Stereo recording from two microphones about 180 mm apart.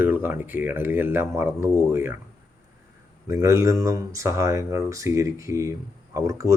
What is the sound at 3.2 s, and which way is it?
Speech, 15° right (ahead or behind).